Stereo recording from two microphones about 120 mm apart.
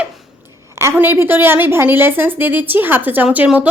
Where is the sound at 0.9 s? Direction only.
20° right (ahead or behind).